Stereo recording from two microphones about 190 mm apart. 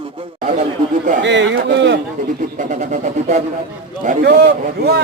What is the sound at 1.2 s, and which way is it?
Speech, 70° right (ahead or behind).